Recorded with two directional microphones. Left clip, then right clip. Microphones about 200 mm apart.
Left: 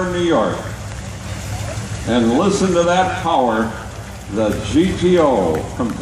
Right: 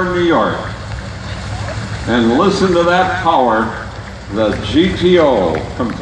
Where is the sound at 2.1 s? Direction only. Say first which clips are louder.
Right 3 dB; 45° left (ahead or behind).